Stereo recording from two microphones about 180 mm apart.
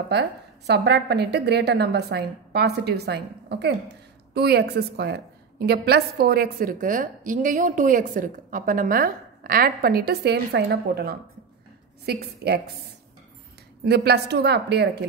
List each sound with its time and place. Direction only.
0.1 s a woman's voice: 70° right (ahead or behind)
13.8 s a woman's voice: 65° right (ahead or behind)